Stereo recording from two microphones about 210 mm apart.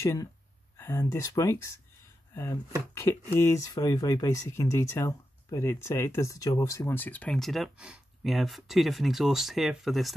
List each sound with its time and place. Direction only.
0.0 s speech: 15° left (ahead or behind); by 10.1 s centre (ahead or behind)